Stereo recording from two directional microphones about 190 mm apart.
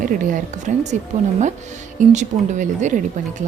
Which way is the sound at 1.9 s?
40° right (ahead or behind).